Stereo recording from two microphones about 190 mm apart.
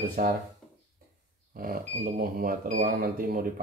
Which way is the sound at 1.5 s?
45° right (ahead or behind).